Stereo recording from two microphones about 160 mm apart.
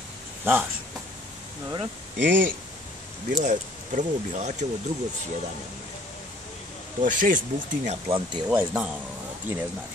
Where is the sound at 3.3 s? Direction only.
50° right (ahead or behind).